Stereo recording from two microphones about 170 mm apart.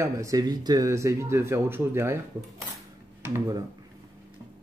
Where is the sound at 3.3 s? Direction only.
20° right (ahead or behind).